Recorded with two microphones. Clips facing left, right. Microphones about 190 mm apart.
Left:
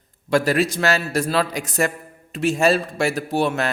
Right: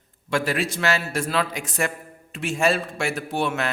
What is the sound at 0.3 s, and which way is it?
A man's voice, 40° left (ahead or behind).